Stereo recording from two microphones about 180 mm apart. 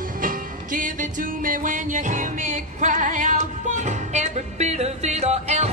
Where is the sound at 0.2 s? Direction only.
45° right (ahead or behind).